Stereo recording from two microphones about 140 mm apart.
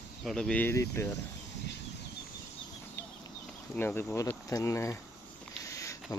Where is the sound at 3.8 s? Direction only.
15° left (ahead or behind).